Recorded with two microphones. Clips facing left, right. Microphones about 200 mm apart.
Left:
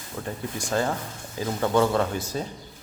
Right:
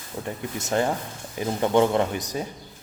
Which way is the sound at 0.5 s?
20° right (ahead or behind).